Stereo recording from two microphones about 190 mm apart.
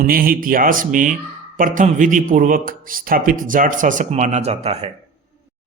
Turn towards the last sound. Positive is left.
turn(degrees=-35)  # may be behind; listen again after turning